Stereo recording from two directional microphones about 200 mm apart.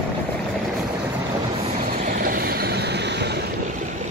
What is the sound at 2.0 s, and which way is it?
Vehicle, 45° right (ahead or behind).